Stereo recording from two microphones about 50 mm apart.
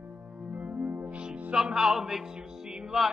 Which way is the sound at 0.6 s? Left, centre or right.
Right.